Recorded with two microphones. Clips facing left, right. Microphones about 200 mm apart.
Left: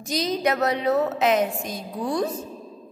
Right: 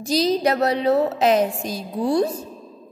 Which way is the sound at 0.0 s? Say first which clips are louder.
Right 5 dB; 35° right (ahead or behind).